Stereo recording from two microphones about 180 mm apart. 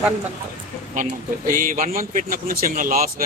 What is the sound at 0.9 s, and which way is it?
Speech, 50° right (ahead or behind).